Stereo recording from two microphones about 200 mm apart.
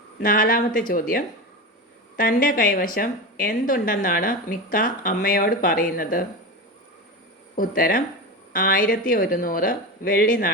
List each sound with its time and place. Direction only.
0.2 s a woman's voice: 45° left (ahead or behind)
7.5 s a woman's voice: 45° left (ahead or behind)